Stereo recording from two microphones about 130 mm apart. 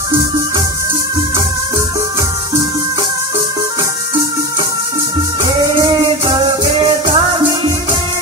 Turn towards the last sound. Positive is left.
turn(degrees=-40)  # may be behind; listen again after turning